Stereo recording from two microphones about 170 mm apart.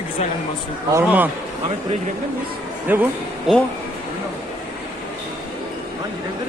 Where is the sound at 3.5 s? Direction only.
Centre (ahead or behind).